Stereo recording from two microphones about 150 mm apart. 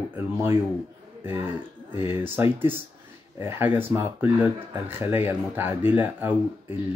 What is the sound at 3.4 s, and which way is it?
Speech, 15° right (ahead or behind).